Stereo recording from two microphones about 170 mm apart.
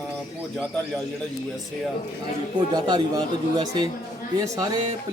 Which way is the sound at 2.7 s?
25° right (ahead or behind).